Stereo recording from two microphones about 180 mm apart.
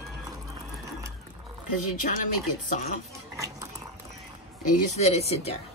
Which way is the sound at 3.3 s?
20° right (ahead or behind).